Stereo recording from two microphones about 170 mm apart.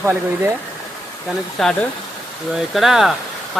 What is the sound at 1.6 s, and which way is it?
Speech, centre (ahead or behind).